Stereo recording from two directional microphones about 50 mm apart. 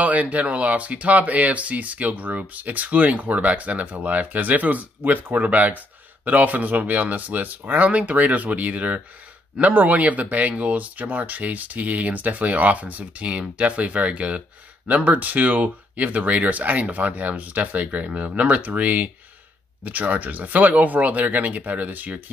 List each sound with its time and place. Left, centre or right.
0.0 s speech: right